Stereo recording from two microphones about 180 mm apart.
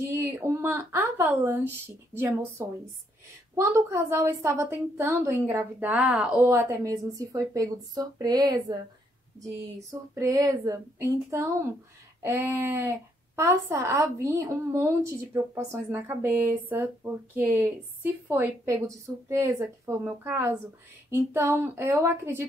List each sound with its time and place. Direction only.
0.0 s a woman's voice: 15° right (ahead or behind)